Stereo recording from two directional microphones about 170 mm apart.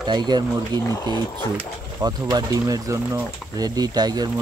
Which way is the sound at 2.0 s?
20° right (ahead or behind).